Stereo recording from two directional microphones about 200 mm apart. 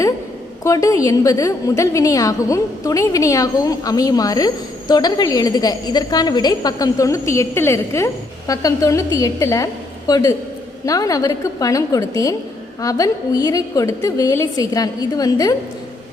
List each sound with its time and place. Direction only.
0.6 s a woman's voice: 15° left (ahead or behind)